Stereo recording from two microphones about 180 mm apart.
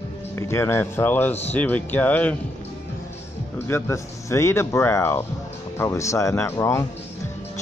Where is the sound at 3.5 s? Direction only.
15° left (ahead or behind).